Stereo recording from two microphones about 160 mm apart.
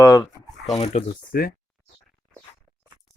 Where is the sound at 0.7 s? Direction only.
40° left (ahead or behind).